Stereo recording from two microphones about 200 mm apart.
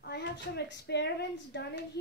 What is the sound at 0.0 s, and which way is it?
A woman's voice, 55° left (ahead or behind).